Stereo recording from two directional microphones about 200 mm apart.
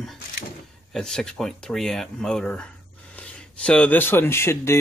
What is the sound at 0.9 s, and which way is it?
Speech, 5° left (ahead or behind).